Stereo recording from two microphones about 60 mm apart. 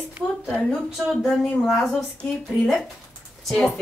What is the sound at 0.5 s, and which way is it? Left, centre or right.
Speech, centre.